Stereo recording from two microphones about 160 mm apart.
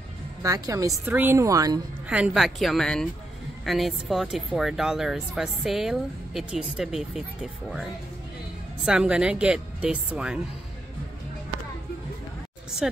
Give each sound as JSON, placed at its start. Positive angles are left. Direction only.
{"t": 0.4, "sound": "a woman's voice", "side_deg": -20}
{"t": 2.0, "sound": "speech", "side_deg": -5}
{"t": 8.8, "sound": "speech", "side_deg": -5}
{"t": 12.8, "sound": "speech", "side_deg": -5}